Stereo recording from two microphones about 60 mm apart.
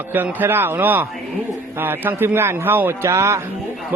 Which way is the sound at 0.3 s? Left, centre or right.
Right.